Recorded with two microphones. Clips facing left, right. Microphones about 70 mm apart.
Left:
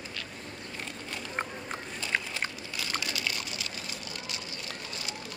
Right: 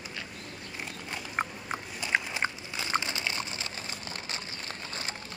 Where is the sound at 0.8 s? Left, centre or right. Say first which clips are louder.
Right 1 dB; centre; by 5.1 s right.